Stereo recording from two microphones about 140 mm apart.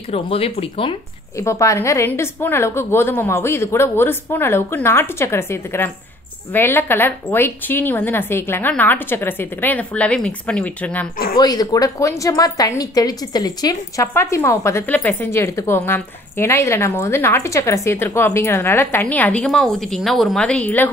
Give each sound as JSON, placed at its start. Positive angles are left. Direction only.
{"t": 0.1, "sound": "speech", "side_deg": 45}
{"t": 1.4, "sound": "a woman's voice", "side_deg": 20}
{"t": 11.3, "sound": "a woman's voice", "side_deg": 30}